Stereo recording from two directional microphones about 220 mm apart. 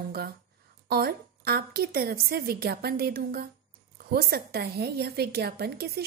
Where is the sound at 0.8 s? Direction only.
45° right (ahead or behind).